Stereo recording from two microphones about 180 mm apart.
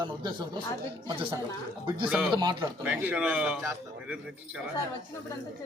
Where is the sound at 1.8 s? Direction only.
25° right (ahead or behind).